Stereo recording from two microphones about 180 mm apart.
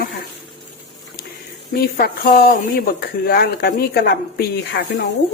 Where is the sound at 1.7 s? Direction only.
55° left (ahead or behind).